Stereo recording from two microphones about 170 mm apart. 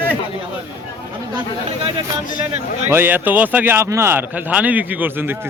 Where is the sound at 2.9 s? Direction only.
10° right (ahead or behind).